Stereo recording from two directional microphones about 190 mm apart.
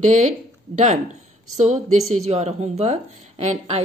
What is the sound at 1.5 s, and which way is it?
Speech, 40° right (ahead or behind).